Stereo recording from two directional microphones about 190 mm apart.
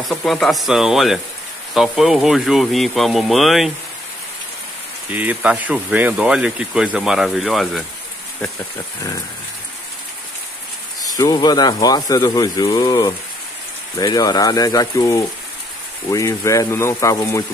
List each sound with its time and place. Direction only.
0.0 s speech: 5° left (ahead or behind)
5.1 s speech: 10° right (ahead or behind)
11.0 s speech: 20° left (ahead or behind)